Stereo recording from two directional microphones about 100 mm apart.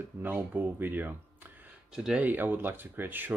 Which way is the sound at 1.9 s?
5° right (ahead or behind).